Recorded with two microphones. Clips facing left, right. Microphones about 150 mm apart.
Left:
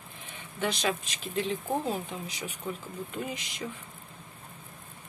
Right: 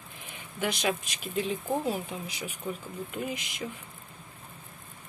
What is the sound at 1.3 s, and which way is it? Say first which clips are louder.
Speech: even; 15° right (ahead or behind).